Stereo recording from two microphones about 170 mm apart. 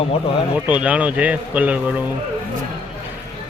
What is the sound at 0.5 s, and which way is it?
Speech, 10° right (ahead or behind).